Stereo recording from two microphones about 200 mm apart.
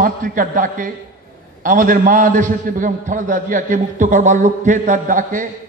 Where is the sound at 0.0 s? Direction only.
45° right (ahead or behind).